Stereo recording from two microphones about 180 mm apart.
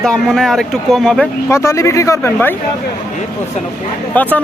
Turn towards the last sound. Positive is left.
turn(degrees=10)  # may be behind; listen again after turning